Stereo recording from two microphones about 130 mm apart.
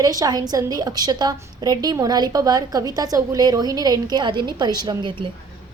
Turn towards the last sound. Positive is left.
turn(degrees=-35)  # may be behind; listen again after turning